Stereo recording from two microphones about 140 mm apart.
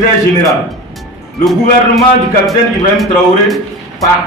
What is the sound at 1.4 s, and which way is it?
A man's voice, centre (ahead or behind).